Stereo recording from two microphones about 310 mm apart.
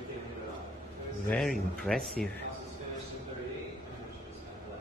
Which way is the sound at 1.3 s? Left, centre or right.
Centre.